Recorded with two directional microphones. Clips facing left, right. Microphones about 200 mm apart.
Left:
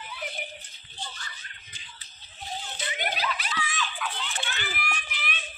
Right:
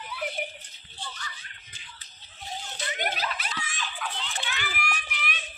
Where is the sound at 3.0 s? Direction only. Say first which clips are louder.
Left 1 dB; 45° right (ahead or behind).